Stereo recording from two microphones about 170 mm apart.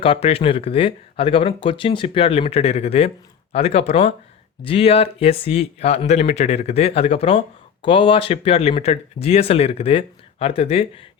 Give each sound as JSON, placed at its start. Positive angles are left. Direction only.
{"t": 0.0, "sound": "speech", "side_deg": 35}